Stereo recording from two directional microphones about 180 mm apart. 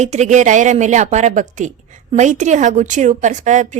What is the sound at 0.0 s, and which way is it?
A woman's voice, 40° right (ahead or behind).